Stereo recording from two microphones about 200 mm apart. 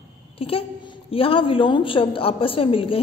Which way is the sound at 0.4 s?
30° left (ahead or behind).